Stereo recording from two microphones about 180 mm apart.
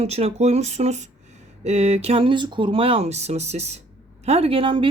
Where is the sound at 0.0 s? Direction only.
35° right (ahead or behind).